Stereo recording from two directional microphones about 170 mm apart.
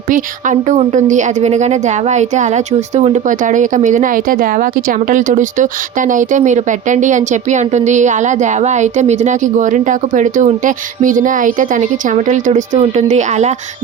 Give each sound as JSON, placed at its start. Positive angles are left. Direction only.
{"t": 0.1, "sound": "speech", "side_deg": -45}